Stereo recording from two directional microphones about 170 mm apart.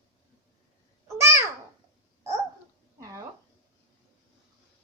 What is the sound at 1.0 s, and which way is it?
Babbling, 15° right (ahead or behind).